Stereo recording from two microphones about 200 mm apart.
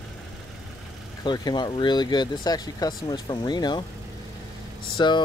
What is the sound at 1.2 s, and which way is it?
Speech, 20° left (ahead or behind).